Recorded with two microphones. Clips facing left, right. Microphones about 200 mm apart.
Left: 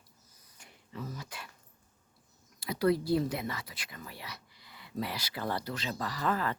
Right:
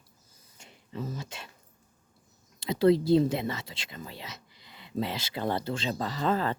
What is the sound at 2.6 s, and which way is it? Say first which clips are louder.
Speech: right 6 dB; 25° right (ahead or behind).